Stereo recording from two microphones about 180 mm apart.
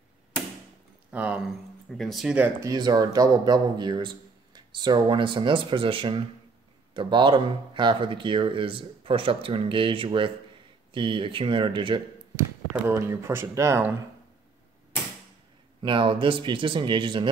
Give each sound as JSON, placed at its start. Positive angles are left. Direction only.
{"t": 1.1, "sound": "speech", "side_deg": -5}
{"t": 2.6, "sound": "speech", "side_deg": -20}
{"t": 12.4, "sound": "speech", "side_deg": -15}
{"t": 15.8, "sound": "speech", "side_deg": -30}